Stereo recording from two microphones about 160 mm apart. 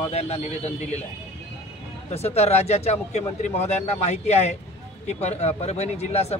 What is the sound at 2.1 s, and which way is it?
Speech, 40° left (ahead or behind).